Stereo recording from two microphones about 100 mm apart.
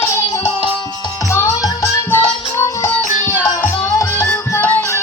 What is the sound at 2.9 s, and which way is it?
Music, 15° left (ahead or behind).